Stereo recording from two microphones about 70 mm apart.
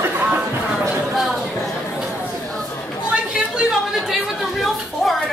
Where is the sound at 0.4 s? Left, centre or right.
Centre.